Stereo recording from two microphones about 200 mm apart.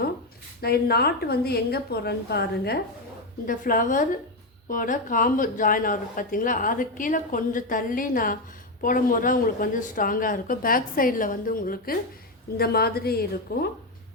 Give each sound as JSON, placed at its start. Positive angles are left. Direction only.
{"t": 0.6, "sound": "a woman's voice", "side_deg": 50}